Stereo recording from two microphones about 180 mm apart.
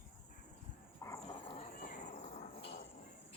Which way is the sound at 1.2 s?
45° left (ahead or behind).